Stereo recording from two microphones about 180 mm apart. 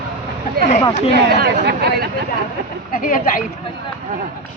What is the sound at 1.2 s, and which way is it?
Speech, 60° right (ahead or behind).